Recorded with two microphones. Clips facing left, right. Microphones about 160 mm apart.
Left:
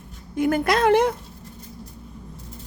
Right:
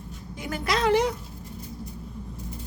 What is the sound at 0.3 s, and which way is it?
Speech, 55° left (ahead or behind).